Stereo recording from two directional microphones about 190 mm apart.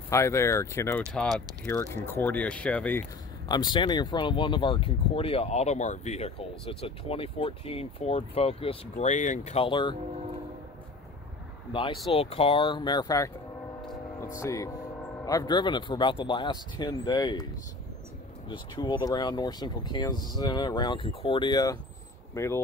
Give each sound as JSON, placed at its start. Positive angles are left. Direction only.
{"t": 0.1, "sound": "speech", "side_deg": 15}
{"t": 1.1, "sound": "speech", "side_deg": 5}
{"t": 3.4, "sound": "speech", "side_deg": 20}
{"t": 11.7, "sound": "speech", "side_deg": 25}
{"t": 14.3, "sound": "speech", "side_deg": 15}
{"t": 18.5, "sound": "speech", "side_deg": 20}